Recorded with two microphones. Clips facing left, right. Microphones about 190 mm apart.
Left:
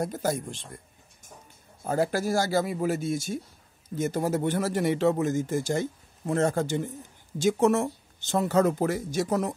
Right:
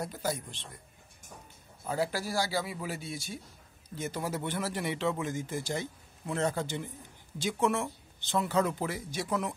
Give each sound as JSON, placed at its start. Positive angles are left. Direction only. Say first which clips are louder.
{"t": 0.0, "sound": "speech", "louder": "left 6 dB", "side_deg": 45}
{"t": 1.9, "sound": "speech", "louder": "left 7 dB", "side_deg": 50}